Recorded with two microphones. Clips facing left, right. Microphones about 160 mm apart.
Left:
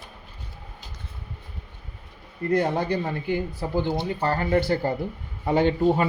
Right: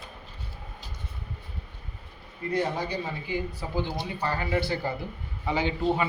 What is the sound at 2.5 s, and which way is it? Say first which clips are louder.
Speech: left 5 dB; 55° left (ahead or behind).